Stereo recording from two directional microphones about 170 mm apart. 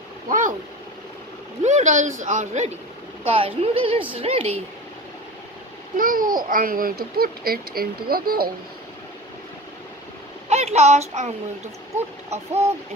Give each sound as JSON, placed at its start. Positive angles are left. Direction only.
{"t": 0.3, "sound": "a sound", "side_deg": -50}
{"t": 1.6, "sound": "speech", "side_deg": -45}
{"t": 3.3, "sound": "a woman's voice", "side_deg": -35}
{"t": 5.9, "sound": "a child's voice", "side_deg": -55}
{"t": 10.5, "sound": "a child's voice", "side_deg": -40}